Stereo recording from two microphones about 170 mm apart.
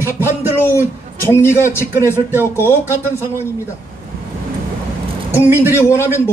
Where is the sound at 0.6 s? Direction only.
15° left (ahead or behind).